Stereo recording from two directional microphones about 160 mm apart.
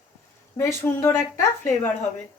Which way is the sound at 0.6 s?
15° left (ahead or behind).